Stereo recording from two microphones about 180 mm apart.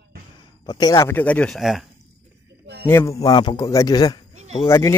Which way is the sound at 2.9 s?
15° left (ahead or behind).